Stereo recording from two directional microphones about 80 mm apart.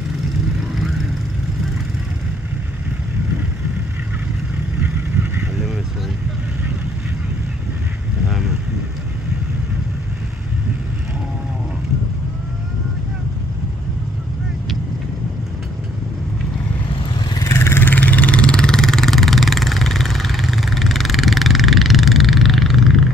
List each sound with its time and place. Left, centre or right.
8.3 s vehicle: centre
16.9 s vehicle: left
17.5 s vehicle: left; by 23.0 s centre